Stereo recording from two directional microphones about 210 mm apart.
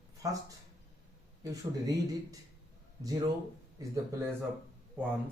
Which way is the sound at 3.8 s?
10° right (ahead or behind).